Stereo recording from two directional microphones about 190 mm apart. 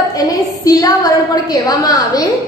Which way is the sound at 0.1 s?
20° left (ahead or behind).